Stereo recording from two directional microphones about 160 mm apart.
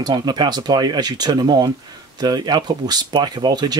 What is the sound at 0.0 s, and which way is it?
Speech, 25° right (ahead or behind).